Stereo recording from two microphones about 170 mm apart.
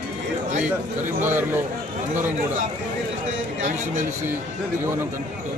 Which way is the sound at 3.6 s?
50° right (ahead or behind).